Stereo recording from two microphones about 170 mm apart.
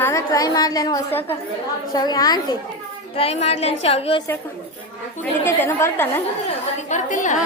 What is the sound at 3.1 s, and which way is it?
A woman's voice, 35° left (ahead or behind).